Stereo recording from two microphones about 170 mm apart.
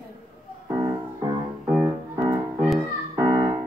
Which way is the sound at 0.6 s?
25° right (ahead or behind).